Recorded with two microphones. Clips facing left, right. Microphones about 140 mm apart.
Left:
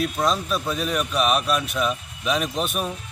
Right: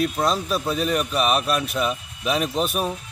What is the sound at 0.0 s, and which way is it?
Speech, centre (ahead or behind).